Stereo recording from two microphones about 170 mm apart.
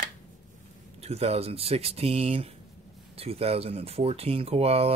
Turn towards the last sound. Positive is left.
turn(degrees=-35)  # may be behind; listen again after turning